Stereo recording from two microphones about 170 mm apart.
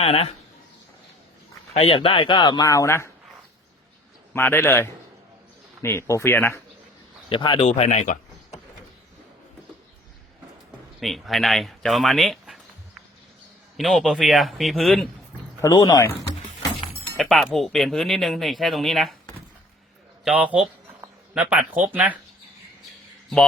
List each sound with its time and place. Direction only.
0.0 s speech: 35° left (ahead or behind)
1.7 s speech: 35° left (ahead or behind); by 3.1 s 15° left (ahead or behind)
4.4 s speech: 15° left (ahead or behind)
7.3 s speech: 30° left (ahead or behind)
7.7 s speech: 40° left (ahead or behind)
11.0 s speech: centre (ahead or behind)
13.7 s speech: centre (ahead or behind)
15.6 s speech: 20° left (ahead or behind)
17.2 s speech: centre (ahead or behind)
20.2 s a man's voice: 10° right (ahead or behind)